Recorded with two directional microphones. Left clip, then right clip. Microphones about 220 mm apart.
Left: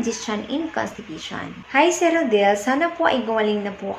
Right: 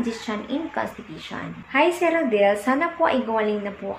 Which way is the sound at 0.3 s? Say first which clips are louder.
Left 2 dB; 10° left (ahead or behind).